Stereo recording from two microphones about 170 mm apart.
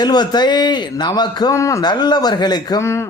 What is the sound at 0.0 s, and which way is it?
A man's voice, 25° left (ahead or behind).